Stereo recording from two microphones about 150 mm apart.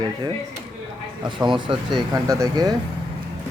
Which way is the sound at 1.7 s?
35° right (ahead or behind).